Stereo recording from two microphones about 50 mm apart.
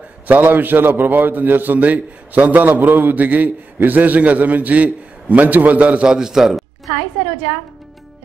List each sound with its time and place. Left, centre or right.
0.3 s a man's voice: right
6.0 s a man's voice: centre